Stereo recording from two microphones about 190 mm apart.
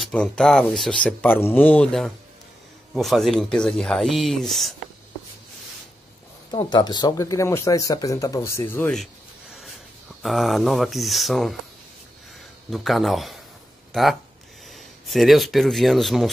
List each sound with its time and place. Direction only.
0.0 s speech: 5° left (ahead or behind)
6.5 s speech: 20° left (ahead or behind); by 9.1 s 5° left (ahead or behind)
10.2 s speech: centre (ahead or behind)
12.6 s speech: centre (ahead or behind)